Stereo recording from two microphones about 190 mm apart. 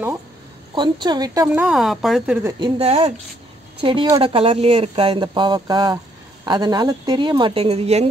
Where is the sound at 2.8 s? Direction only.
35° right (ahead or behind).